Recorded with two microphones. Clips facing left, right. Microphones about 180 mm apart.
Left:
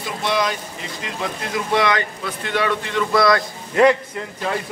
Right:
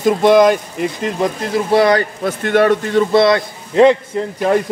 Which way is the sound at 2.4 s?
50° right (ahead or behind).